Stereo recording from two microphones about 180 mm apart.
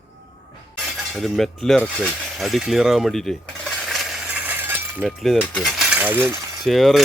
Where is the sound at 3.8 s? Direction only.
Centre (ahead or behind).